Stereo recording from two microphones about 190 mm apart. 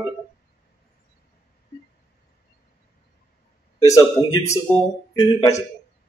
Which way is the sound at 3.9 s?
20° left (ahead or behind).